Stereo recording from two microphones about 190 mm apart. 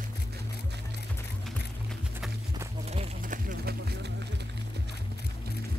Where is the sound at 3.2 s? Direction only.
45° right (ahead or behind).